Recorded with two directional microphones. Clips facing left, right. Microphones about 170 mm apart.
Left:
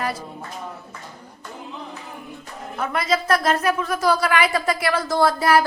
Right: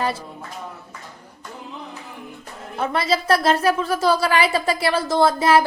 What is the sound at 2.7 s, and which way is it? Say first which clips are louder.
A woman's voice: right 1 dB; 30° right (ahead or behind).